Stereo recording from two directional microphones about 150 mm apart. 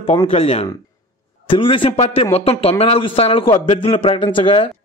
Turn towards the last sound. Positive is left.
turn(degrees=35)  # may be behind; listen again after turning